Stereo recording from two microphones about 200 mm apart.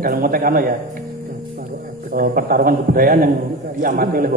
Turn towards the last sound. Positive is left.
turn(degrees=-45)  # may be behind; listen again after turning